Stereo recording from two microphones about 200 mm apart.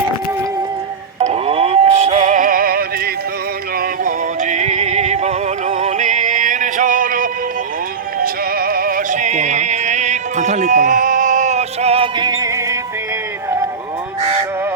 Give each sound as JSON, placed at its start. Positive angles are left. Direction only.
{"t": 1.2, "sound": "music", "side_deg": -30}